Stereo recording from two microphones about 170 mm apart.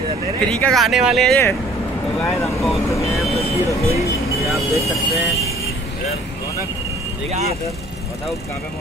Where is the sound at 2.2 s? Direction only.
15° left (ahead or behind).